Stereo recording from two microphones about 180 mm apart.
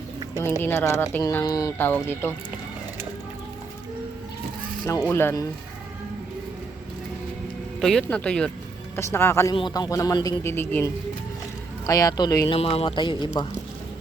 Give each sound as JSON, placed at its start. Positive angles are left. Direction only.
{"t": 0.6, "sound": "speech", "side_deg": 15}
{"t": 4.9, "sound": "speech", "side_deg": 15}
{"t": 7.8, "sound": "speech", "side_deg": 0}
{"t": 10.4, "sound": "speech", "side_deg": 15}
{"t": 12.5, "sound": "speech", "side_deg": 30}